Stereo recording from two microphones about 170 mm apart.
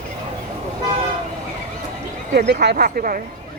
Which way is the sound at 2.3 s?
65° right (ahead or behind).